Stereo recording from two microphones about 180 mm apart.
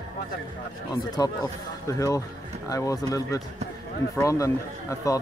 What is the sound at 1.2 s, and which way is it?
Speech, 20° left (ahead or behind).